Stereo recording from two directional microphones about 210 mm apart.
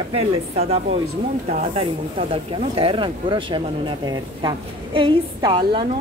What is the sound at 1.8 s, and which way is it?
Speech, 25° right (ahead or behind).